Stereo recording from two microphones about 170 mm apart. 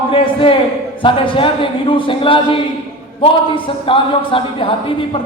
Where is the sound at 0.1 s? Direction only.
30° left (ahead or behind).